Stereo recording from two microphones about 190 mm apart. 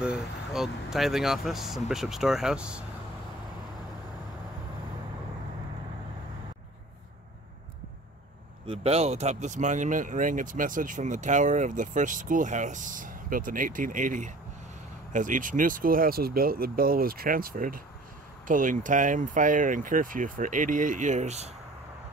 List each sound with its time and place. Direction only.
0.0 s speech: 5° right (ahead or behind)
8.6 s speech: 30° right (ahead or behind)